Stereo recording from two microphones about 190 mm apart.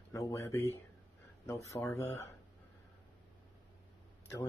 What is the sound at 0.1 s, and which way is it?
Speech, 15° left (ahead or behind).